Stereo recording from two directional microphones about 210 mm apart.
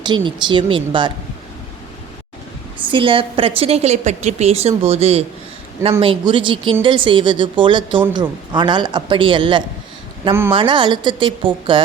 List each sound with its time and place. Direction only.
0.0 s a woman's voice: 20° right (ahead or behind)
2.9 s a woman's voice: 25° right (ahead or behind)